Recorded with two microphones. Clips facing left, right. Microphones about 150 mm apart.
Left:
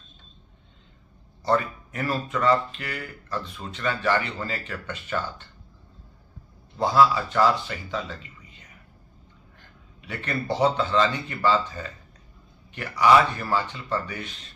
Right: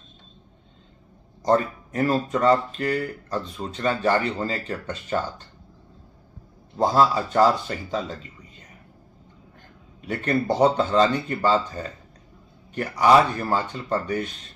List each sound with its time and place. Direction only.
1.4 s speech: 35° right (ahead or behind)
6.8 s speech: 40° right (ahead or behind)
10.0 s speech: 45° right (ahead or behind)